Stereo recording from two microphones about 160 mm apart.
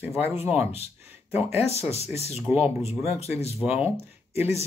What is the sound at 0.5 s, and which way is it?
Speech, 40° left (ahead or behind).